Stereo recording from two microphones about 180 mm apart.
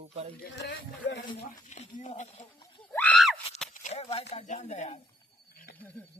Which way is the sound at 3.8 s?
35° left (ahead or behind).